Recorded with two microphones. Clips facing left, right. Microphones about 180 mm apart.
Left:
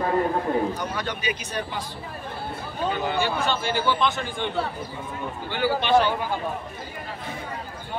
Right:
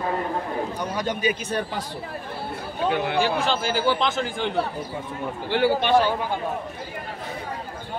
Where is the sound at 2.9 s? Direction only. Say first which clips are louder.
Right 3 dB; 90° right.